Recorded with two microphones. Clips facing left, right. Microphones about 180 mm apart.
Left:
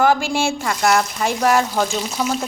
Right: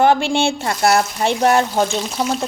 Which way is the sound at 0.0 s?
25° right (ahead or behind).